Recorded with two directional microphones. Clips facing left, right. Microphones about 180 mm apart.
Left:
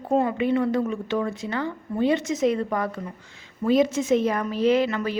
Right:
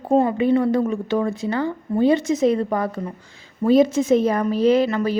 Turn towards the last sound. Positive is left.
turn(degrees=-35)  # may be behind; listen again after turning